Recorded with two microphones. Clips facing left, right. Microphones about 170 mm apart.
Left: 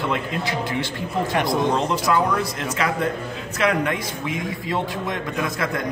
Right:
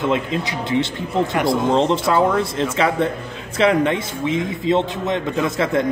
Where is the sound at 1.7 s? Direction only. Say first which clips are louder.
Right 4 dB; 25° right (ahead or behind).